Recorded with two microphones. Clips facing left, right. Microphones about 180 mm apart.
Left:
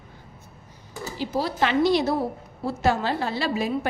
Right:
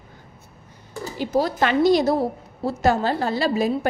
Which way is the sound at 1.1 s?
50° right (ahead or behind).